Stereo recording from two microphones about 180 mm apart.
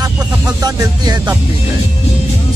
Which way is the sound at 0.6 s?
20° right (ahead or behind).